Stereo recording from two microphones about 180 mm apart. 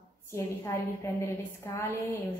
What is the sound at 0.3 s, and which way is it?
A woman's voice, 15° left (ahead or behind).